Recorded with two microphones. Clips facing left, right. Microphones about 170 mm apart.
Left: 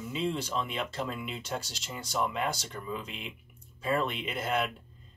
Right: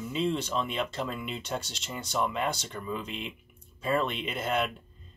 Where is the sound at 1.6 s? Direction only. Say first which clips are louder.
Right 2 dB; 25° right (ahead or behind).